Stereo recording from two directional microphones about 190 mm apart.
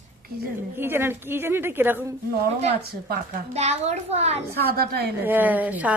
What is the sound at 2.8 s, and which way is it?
Speech, 55° right (ahead or behind).